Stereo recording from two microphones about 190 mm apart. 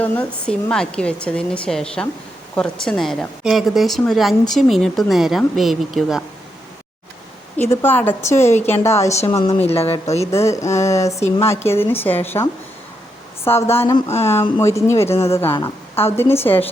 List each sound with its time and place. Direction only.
0.0 s a woman's voice: 5° left (ahead or behind)
7.6 s a woman's voice: 10° left (ahead or behind)
9.6 s speech: 30° left (ahead or behind)
10.3 s a woman's voice: 15° left (ahead or behind)